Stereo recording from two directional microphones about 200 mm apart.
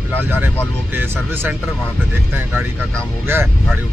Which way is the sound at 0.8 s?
10° right (ahead or behind).